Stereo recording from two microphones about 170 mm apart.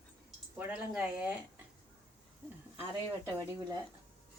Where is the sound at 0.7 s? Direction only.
10° right (ahead or behind).